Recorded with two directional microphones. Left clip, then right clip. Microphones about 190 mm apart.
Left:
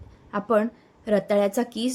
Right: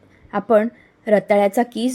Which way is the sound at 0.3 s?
15° right (ahead or behind).